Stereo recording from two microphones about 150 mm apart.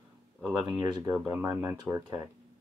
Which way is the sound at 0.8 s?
20° right (ahead or behind).